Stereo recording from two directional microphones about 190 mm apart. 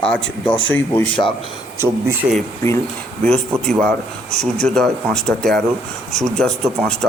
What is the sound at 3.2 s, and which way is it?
Speech, 5° left (ahead or behind).